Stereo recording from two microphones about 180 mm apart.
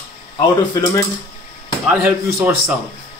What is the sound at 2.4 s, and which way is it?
Speech, 10° right (ahead or behind).